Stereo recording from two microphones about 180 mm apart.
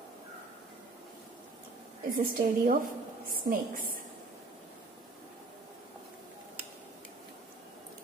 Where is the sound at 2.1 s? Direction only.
50° right (ahead or behind).